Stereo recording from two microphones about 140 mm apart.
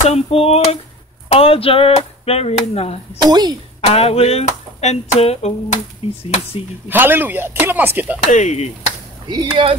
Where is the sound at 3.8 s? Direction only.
45° left (ahead or behind).